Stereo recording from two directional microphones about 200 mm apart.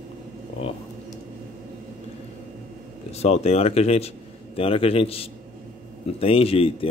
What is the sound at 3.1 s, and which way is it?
Speech, 30° left (ahead or behind).